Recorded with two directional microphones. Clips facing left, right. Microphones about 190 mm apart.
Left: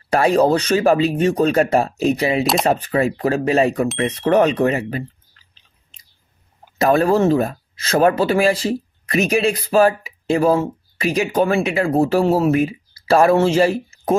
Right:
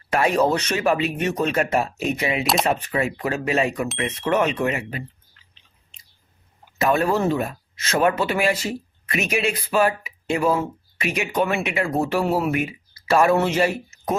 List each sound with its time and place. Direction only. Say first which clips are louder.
0.1 s speech: left 5 dB; 35° left (ahead or behind)
6.8 s speech: left 5 dB; 35° left (ahead or behind)